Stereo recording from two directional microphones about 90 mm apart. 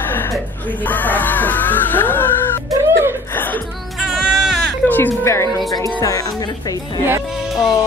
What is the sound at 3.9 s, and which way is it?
Music, centre (ahead or behind).